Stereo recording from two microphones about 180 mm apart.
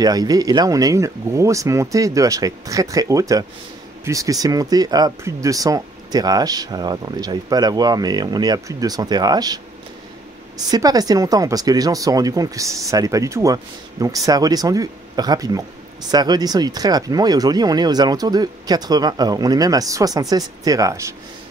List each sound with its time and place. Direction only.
0.0 s speech: 20° right (ahead or behind)
10.7 s speech: 20° right (ahead or behind)